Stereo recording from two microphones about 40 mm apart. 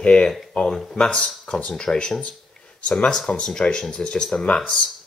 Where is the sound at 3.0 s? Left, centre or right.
Centre.